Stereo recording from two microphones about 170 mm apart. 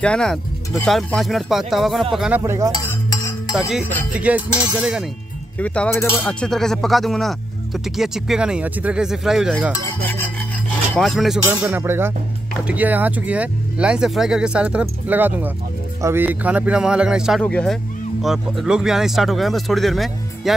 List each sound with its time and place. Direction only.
0.0 s speech: 5° left (ahead or behind); by 2.7 s 15° right (ahead or behind)
2.8 s cutlery: 20° left (ahead or behind)
3.5 s speech: 5° right (ahead or behind)
5.6 s speech: 10° left (ahead or behind); by 9.8 s 5° right (ahead or behind)
9.8 s rub: 10° left (ahead or behind)
11.0 s speech: centre (ahead or behind)
11.7 s speech: 15° right (ahead or behind)